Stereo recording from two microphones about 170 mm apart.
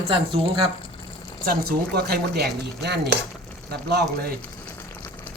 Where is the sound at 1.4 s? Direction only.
60° right (ahead or behind).